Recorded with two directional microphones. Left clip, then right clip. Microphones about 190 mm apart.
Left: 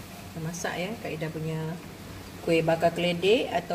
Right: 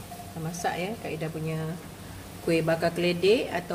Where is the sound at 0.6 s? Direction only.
15° right (ahead or behind).